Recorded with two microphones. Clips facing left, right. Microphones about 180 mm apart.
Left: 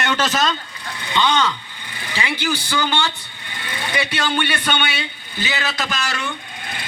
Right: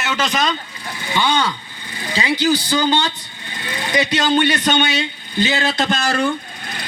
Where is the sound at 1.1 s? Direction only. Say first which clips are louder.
Even; 10° right (ahead or behind).